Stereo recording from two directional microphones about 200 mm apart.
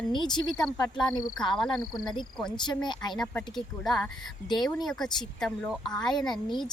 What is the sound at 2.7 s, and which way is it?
Speech, 20° left (ahead or behind).